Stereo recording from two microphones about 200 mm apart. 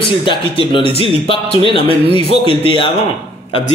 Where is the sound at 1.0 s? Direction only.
25° left (ahead or behind).